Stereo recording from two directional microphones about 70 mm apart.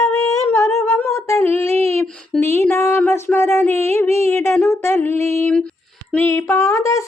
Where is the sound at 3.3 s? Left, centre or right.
Left.